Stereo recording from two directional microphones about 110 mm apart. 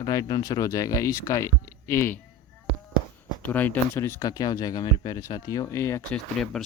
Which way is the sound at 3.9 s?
30° left (ahead or behind).